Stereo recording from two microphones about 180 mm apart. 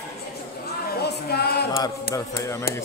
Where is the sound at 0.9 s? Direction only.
65° left (ahead or behind).